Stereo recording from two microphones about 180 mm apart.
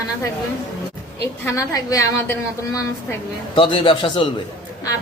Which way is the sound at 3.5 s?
30° left (ahead or behind).